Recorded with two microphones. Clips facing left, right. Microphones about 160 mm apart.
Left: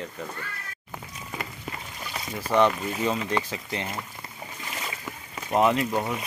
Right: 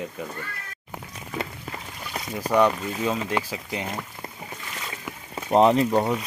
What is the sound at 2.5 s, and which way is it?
Speech, 5° right (ahead or behind).